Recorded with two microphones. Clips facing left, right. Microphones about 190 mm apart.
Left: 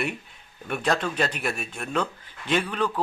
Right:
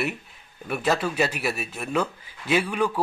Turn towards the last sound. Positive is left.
turn(degrees=-10)  # may be behind; listen again after turning